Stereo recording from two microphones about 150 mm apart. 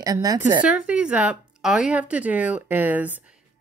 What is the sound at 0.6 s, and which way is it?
Speech, 10° right (ahead or behind).